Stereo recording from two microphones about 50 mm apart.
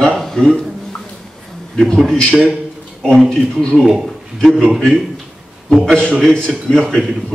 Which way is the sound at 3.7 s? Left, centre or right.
Centre.